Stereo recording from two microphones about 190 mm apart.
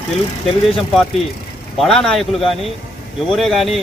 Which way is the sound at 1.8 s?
5° left (ahead or behind).